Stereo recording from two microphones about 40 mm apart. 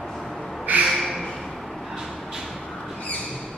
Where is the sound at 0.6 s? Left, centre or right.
Right.